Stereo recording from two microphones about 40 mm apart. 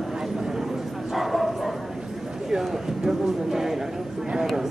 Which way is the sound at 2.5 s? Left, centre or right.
Centre.